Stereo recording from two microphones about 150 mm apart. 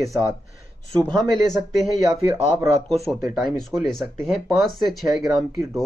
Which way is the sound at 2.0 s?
20° right (ahead or behind).